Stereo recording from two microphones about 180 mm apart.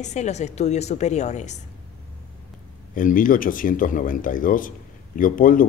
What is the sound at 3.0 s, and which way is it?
Speech, 50° left (ahead or behind).